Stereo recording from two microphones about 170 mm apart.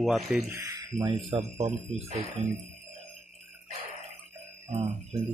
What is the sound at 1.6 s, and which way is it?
Speech, 40° right (ahead or behind).